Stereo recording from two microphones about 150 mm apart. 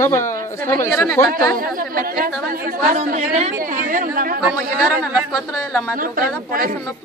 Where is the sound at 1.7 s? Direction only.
70° right (ahead or behind).